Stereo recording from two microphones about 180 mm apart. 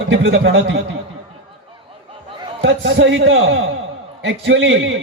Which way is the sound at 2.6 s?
90° right.